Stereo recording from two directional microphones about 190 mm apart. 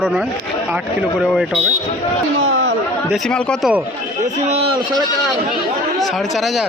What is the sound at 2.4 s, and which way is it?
Chatter, 90° right.